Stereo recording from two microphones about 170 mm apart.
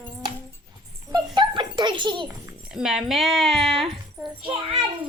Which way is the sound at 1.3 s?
30° right (ahead or behind).